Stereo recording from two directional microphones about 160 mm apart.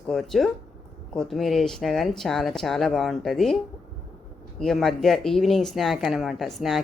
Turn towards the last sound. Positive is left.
turn(degrees=0)  # may be behind; listen again after turning